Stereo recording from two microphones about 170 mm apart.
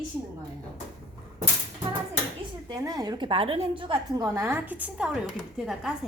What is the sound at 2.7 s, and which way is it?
A woman's voice, 20° right (ahead or behind).